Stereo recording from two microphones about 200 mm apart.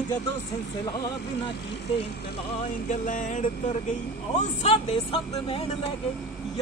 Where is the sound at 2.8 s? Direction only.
40° left (ahead or behind).